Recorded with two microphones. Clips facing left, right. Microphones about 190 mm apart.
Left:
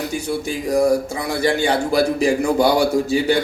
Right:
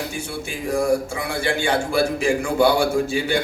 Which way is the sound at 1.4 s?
40° left (ahead or behind).